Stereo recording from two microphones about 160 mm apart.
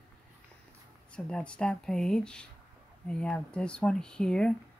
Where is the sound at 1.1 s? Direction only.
5° left (ahead or behind).